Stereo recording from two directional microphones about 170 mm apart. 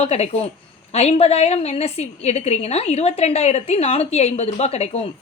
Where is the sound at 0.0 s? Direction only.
35° left (ahead or behind).